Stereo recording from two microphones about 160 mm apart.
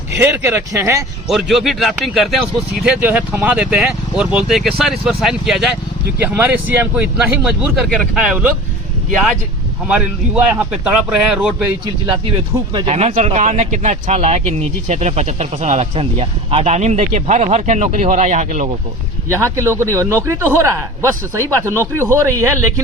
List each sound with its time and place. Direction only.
0.2 s speech: 15° right (ahead or behind)
1.3 s speech: centre (ahead or behind)
9.8 s speech: 5° right (ahead or behind)
12.7 s speech: 40° right (ahead or behind)
19.3 s speech: 15° right (ahead or behind)